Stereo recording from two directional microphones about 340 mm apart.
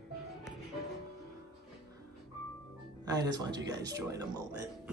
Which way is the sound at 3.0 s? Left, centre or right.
Centre.